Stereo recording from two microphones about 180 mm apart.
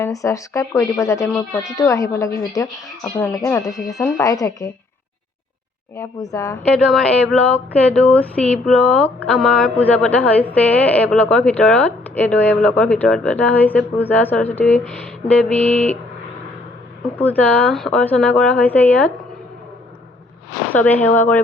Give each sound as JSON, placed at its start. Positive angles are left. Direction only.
{"t": 0.0, "sound": "speech", "side_deg": 15}
{"t": 6.0, "sound": "speech", "side_deg": 20}
{"t": 6.7, "sound": "speech", "side_deg": 0}
{"t": 17.2, "sound": "speech", "side_deg": 10}
{"t": 20.7, "sound": "speech", "side_deg": 10}